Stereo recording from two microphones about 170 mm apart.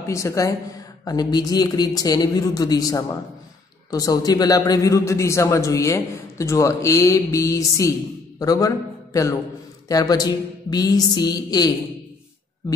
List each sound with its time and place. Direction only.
0.0 s a man's voice: 15° left (ahead or behind)